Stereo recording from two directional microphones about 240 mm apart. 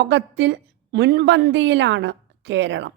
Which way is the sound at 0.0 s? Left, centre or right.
Right.